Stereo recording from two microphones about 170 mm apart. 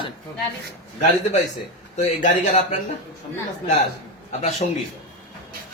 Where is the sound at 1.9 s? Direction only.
45° left (ahead or behind).